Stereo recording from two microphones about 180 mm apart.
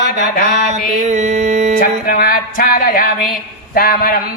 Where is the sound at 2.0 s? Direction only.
55° left (ahead or behind).